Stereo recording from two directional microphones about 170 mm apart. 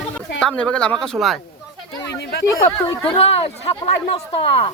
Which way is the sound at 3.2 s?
35° left (ahead or behind).